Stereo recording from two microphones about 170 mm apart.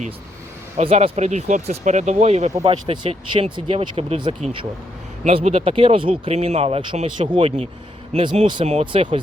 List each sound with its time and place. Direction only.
0.8 s speech: 40° right (ahead or behind)